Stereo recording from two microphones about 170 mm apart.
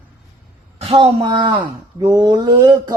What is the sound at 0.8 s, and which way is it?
Speech, 35° right (ahead or behind).